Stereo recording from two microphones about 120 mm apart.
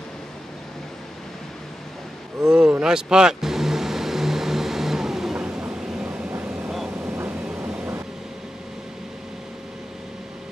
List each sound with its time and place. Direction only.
2.4 s vehicle: 5° right (ahead or behind)